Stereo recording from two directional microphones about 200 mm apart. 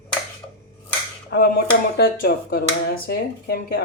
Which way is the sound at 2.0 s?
50° left (ahead or behind).